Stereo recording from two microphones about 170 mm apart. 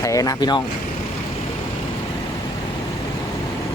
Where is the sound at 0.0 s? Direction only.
20° left (ahead or behind).